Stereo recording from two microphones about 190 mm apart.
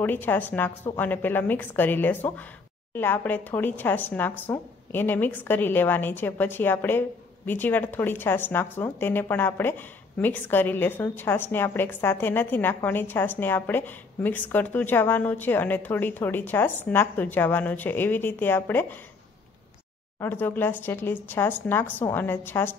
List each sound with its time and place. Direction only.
0.0 s a woman's voice: 10° left (ahead or behind)
20.2 s a woman's voice: 10° left (ahead or behind)